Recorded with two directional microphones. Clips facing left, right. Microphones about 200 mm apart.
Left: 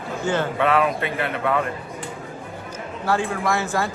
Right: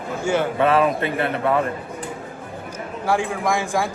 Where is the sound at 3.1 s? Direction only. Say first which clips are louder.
Right 1 dB; 15° right (ahead or behind).